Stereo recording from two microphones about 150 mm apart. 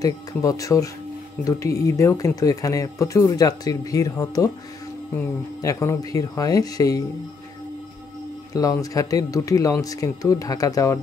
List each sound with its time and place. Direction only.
0.0 s speech: 25° left (ahead or behind)
8.5 s speech: 20° left (ahead or behind)